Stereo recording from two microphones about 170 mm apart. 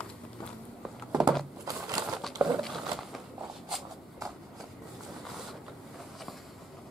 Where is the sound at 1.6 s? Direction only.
20° right (ahead or behind).